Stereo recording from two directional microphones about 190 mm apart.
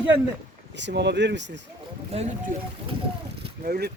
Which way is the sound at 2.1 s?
35° right (ahead or behind).